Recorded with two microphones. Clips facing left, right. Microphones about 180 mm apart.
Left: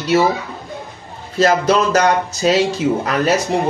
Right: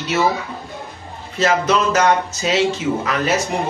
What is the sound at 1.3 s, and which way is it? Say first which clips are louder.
Speech: left 3 dB; 35° left (ahead or behind).